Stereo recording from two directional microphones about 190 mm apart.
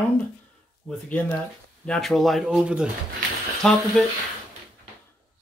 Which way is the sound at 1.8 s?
5° left (ahead or behind).